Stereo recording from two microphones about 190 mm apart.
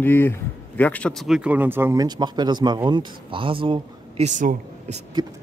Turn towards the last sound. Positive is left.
turn(degrees=-40)  # may be behind; listen again after turning